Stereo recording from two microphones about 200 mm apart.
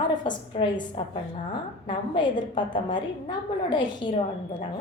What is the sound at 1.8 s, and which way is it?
A woman's voice, 25° left (ahead or behind).